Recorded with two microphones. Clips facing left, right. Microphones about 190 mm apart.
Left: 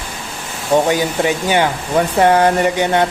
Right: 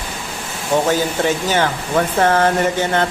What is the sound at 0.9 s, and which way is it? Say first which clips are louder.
Speech: left 1 dB; 15° left (ahead or behind).